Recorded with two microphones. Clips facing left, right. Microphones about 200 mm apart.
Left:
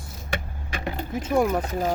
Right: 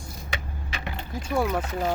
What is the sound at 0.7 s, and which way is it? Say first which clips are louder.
Vehicle: left 6 dB; 45° left (ahead or behind).